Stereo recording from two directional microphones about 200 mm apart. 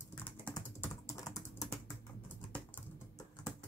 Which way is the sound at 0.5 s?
15° left (ahead or behind).